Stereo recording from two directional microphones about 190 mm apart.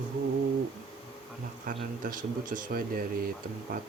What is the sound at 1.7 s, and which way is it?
Speech, 45° right (ahead or behind).